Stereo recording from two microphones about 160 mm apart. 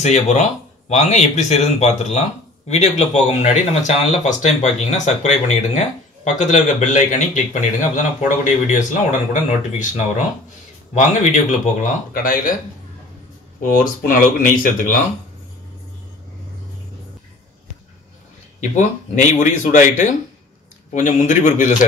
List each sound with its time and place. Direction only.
0.0 s speech: 45° left (ahead or behind); by 12.5 s 60° left (ahead or behind)
13.6 s speech: 60° left (ahead or behind)
18.6 s speech: 50° left (ahead or behind)